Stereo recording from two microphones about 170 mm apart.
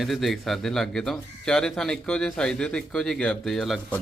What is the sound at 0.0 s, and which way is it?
Speech, centre (ahead or behind).